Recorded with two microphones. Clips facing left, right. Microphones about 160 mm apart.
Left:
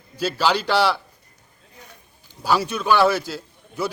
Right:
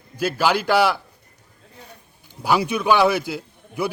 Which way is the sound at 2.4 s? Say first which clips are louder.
Right 2 dB; 15° right (ahead or behind).